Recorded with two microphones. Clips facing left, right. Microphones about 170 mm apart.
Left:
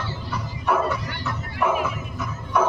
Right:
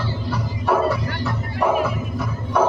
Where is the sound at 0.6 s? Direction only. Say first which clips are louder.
Right 4 dB; 35° right (ahead or behind).